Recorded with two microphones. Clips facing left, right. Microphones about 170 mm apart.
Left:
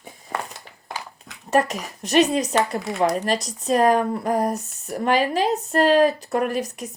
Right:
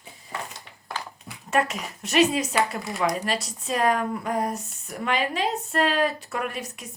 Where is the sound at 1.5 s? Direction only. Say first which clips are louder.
Left 4 dB; 40° left (ahead or behind).